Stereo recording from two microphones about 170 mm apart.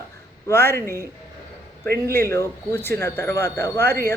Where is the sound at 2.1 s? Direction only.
15° left (ahead or behind).